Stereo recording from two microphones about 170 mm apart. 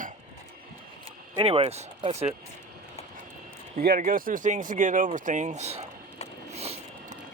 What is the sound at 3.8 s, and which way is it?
Speech, 60° right (ahead or behind).